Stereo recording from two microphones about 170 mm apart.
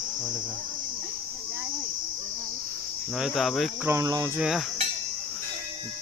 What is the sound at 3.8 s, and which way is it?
Cricket, 20° right (ahead or behind).